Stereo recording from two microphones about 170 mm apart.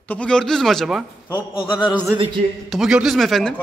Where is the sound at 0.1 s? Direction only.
5° left (ahead or behind).